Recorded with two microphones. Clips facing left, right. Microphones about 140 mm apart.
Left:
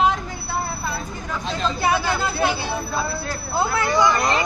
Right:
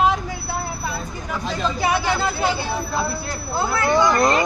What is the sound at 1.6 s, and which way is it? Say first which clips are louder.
Speech: even; 15° right (ahead or behind).